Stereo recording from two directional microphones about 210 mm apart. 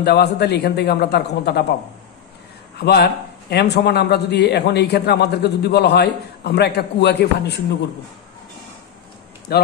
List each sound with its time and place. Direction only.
0.0 s a man's voice: 50° left (ahead or behind)
2.8 s a man's voice: 50° left (ahead or behind)
9.5 s a man's voice: 50° left (ahead or behind)